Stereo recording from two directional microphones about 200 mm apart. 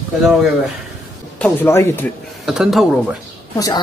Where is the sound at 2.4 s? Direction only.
Centre (ahead or behind).